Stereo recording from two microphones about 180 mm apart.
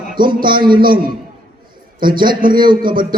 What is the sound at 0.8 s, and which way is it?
Speech, 55° right (ahead or behind).